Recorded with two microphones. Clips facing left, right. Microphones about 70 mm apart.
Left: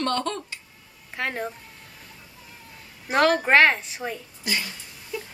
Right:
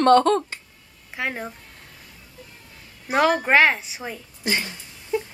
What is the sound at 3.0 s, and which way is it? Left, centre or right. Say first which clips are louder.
A woman's voice: right 1 dB; centre.